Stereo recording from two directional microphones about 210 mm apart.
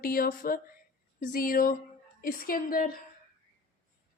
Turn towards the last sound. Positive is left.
turn(degrees=45)  # may be behind; listen again after turning